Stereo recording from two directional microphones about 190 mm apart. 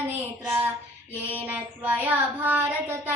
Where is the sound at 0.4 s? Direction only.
10° right (ahead or behind).